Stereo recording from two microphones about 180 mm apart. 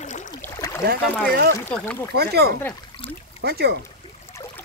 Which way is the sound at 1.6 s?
10° left (ahead or behind).